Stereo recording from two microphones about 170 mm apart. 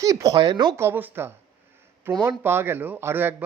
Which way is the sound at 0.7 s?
15° right (ahead or behind).